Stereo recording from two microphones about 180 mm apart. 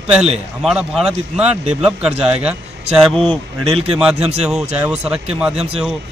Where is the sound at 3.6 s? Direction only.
30° right (ahead or behind).